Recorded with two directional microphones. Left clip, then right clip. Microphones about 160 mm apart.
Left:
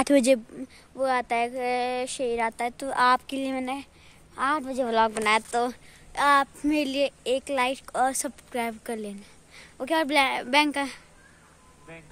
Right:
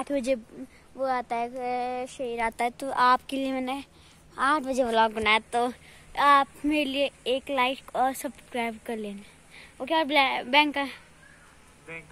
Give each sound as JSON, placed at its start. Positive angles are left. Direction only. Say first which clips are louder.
{"t": 0.0, "sound": "speech", "louder": "left 7 dB", "side_deg": 75}
{"t": 0.9, "sound": "child singing", "louder": "left 3 dB", "side_deg": 25}
{"t": 2.8, "sound": "a woman's voice", "louder": "left 1 dB", "side_deg": 10}
{"t": 4.8, "sound": "a woman's voice", "louder": "left 1 dB", "side_deg": 15}
{"t": 11.9, "sound": "speech", "louder": "right 5 dB", "side_deg": 60}